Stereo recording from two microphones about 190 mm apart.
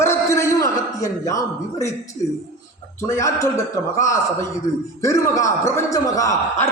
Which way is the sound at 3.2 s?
15° left (ahead or behind).